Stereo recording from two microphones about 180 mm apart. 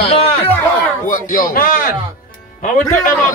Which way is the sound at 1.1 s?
50° left (ahead or behind).